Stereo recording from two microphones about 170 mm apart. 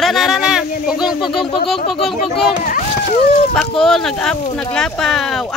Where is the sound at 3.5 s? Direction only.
Centre (ahead or behind).